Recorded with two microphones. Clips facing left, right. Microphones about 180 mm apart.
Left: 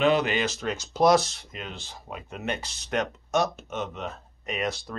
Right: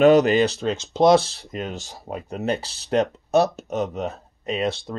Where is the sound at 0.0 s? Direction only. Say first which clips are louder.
Right 8 dB; 40° right (ahead or behind).